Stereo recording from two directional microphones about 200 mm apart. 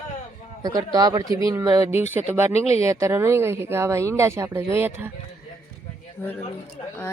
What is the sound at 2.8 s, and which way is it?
Speech, 15° right (ahead or behind).